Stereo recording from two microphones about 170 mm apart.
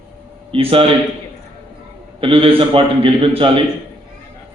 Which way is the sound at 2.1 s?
30° right (ahead or behind).